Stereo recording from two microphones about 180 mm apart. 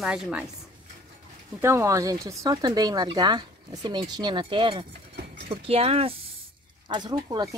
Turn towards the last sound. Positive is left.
turn(degrees=-25)  # may be behind; listen again after turning